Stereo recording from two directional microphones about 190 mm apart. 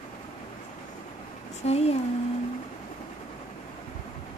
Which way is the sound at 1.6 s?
35° left (ahead or behind).